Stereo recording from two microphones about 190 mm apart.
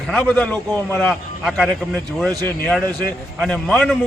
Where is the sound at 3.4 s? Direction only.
Centre (ahead or behind).